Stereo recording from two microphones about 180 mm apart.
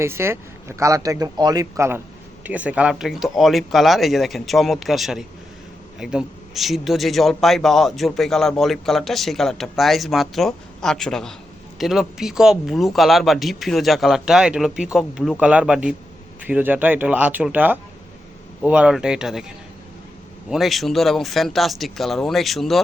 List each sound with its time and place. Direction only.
0.0 s a man's voice: 15° right (ahead or behind)